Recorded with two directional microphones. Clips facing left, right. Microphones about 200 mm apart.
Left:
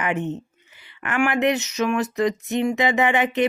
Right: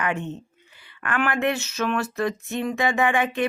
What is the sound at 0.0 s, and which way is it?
Speech, 20° left (ahead or behind).